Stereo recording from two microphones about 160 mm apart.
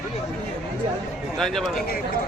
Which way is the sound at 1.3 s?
Centre (ahead or behind).